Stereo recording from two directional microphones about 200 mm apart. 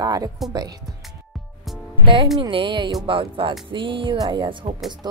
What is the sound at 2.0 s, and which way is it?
Speech, 25° right (ahead or behind).